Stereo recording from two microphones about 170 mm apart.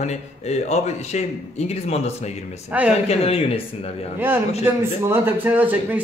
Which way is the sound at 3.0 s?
35° left (ahead or behind).